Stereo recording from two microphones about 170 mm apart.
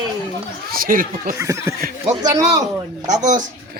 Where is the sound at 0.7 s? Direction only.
55° right (ahead or behind).